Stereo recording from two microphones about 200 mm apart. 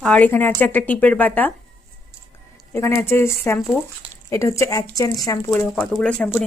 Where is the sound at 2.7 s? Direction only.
15° left (ahead or behind).